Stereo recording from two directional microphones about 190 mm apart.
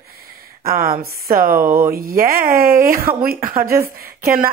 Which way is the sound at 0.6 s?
50° right (ahead or behind).